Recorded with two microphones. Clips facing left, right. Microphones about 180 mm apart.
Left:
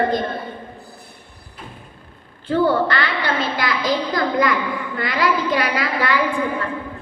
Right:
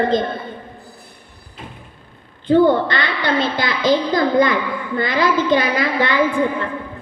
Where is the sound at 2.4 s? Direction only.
20° right (ahead or behind).